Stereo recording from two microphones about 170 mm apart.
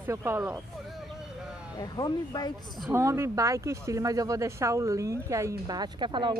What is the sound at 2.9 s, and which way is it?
Speech, 15° right (ahead or behind).